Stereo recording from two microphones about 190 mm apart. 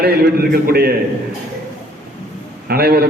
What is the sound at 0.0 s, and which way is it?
Speech, 55° right (ahead or behind).